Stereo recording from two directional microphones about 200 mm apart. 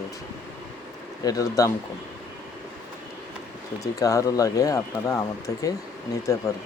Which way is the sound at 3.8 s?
15° left (ahead or behind).